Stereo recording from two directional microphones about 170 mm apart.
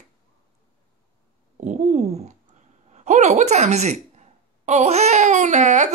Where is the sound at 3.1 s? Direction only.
45° right (ahead or behind).